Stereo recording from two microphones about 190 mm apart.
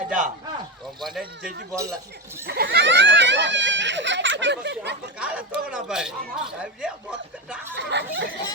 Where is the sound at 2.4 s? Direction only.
55° right (ahead or behind).